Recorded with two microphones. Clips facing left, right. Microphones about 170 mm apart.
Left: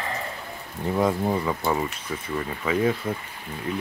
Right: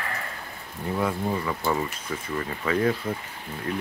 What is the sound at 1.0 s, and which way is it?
Speech, 20° left (ahead or behind).